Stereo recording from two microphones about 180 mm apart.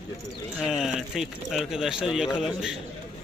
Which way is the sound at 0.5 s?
Centre (ahead or behind).